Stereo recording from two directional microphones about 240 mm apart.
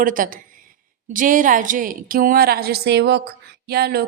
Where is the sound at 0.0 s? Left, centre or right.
Right.